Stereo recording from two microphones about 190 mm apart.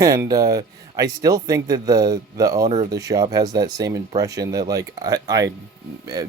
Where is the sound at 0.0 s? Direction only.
20° right (ahead or behind).